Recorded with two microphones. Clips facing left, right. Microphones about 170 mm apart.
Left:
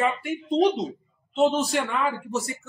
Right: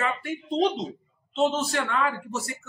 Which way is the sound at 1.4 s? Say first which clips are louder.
Left 3 dB; 15° left (ahead or behind).